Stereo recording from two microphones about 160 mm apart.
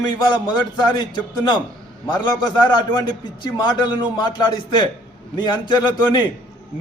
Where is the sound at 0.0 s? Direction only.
25° left (ahead or behind).